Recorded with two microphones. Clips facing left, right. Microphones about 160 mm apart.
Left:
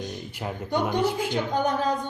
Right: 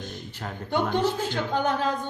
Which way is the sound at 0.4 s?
15° left (ahead or behind).